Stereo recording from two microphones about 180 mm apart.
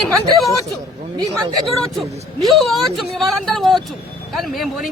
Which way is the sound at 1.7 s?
Centre (ahead or behind).